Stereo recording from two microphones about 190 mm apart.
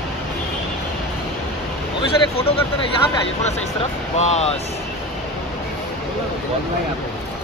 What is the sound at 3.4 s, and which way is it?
Speech, 35° left (ahead or behind).